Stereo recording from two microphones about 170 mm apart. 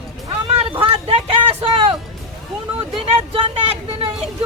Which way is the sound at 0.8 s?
30° right (ahead or behind).